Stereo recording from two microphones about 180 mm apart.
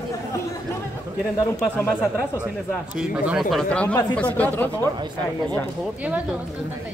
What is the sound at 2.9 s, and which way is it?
Speech, 5° right (ahead or behind).